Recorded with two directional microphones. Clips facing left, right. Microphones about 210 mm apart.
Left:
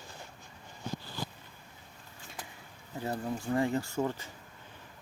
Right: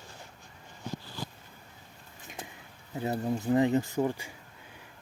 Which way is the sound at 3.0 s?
20° right (ahead or behind).